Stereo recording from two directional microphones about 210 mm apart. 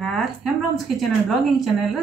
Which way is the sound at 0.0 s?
Centre (ahead or behind).